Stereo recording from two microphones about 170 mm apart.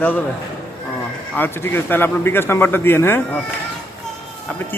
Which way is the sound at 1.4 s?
10° left (ahead or behind).